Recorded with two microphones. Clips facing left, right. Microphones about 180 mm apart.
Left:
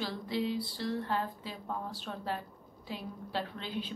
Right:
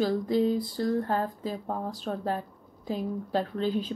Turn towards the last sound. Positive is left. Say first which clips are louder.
# right 10 dB
turn(degrees=-40)  # may be behind; listen again after turning